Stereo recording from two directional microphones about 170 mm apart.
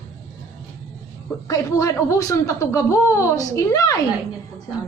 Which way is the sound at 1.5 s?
20° left (ahead or behind).